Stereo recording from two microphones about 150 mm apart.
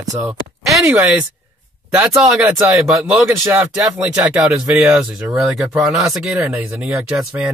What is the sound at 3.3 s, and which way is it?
Speech, 20° right (ahead or behind).